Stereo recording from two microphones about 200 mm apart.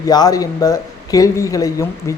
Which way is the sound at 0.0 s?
20° left (ahead or behind).